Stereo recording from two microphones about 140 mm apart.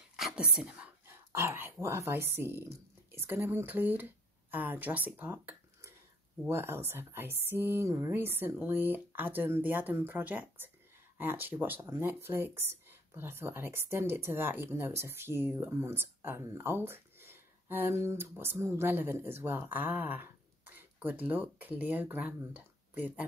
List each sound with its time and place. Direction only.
0.1 s speech: 5° right (ahead or behind)